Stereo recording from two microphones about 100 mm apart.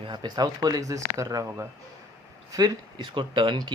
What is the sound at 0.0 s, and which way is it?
Speech, 50° right (ahead or behind).